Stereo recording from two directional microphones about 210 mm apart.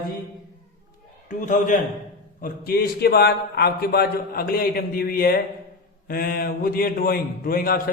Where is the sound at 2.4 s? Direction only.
45° left (ahead or behind).